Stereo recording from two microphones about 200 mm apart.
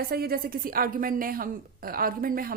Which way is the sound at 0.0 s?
50° right (ahead or behind).